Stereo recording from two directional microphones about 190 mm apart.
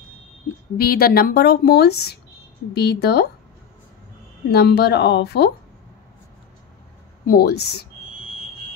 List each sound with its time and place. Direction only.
0.7 s a woman's voice: 55° left (ahead or behind)
4.5 s a woman's voice: 60° left (ahead or behind)
7.2 s a woman's voice: 55° left (ahead or behind)